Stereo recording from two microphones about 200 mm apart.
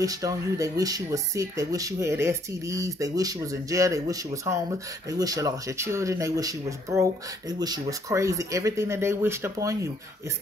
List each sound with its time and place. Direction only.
0.0 s speech: 15° right (ahead or behind)